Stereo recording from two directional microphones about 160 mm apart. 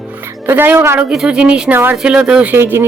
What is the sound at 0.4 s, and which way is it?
Speech, 10° right (ahead or behind).